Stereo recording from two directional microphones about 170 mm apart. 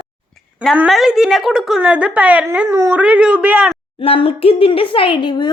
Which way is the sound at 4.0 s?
35° left (ahead or behind).